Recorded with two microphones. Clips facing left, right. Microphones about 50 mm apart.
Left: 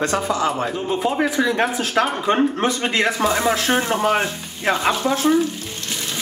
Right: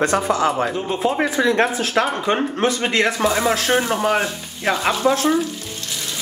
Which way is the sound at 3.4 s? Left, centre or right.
Centre.